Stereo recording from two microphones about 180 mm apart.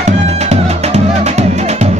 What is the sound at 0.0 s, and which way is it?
Music, 35° right (ahead or behind).